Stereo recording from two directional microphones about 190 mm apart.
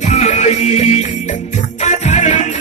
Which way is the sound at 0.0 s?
35° left (ahead or behind).